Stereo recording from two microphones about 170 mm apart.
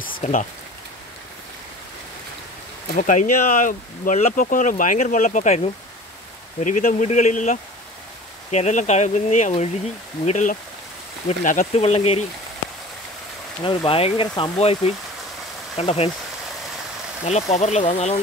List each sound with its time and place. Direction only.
0.2 s speech: 45° left (ahead or behind)
3.0 s speech: 50° left (ahead or behind)
13.7 s speech: 35° left (ahead or behind)
17.2 s speech: 40° left (ahead or behind)